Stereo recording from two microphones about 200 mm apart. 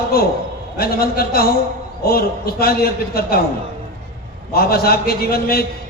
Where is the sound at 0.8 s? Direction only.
50° left (ahead or behind).